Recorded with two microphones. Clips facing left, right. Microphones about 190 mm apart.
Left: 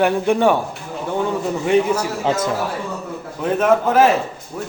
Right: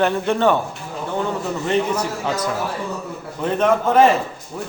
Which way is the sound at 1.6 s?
10° left (ahead or behind).